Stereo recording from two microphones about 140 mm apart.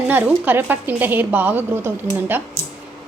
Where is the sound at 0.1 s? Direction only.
15° right (ahead or behind).